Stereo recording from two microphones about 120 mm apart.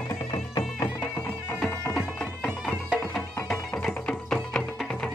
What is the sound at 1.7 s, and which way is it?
Music, 20° left (ahead or behind).